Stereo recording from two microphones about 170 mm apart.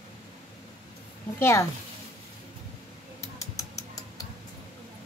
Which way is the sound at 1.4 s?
15° left (ahead or behind).